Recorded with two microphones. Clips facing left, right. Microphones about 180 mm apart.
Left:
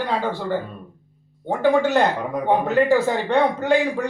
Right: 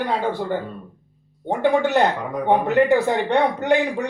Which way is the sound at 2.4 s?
20° right (ahead or behind).